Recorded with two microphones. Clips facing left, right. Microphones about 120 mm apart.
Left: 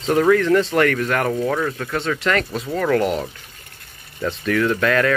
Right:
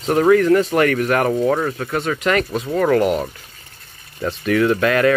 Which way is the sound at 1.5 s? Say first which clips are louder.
Right 3 dB; 25° right (ahead or behind).